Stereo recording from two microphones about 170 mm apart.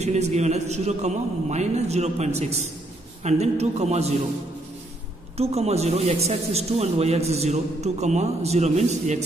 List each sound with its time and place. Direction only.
0.0 s a man's voice: 40° right (ahead or behind)
5.4 s a man's voice: 40° right (ahead or behind)